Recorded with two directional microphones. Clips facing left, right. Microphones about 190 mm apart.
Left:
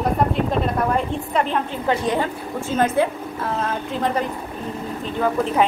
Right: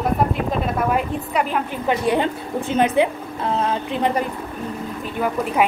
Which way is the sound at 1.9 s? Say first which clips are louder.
Right 2 dB; 15° right (ahead or behind).